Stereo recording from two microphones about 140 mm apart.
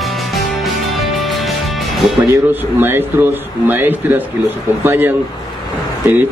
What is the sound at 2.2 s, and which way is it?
A man's voice, 15° right (ahead or behind).